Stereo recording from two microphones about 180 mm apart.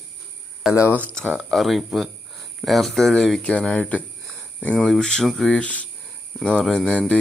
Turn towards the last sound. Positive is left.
turn(degrees=5)  # may be behind; listen again after turning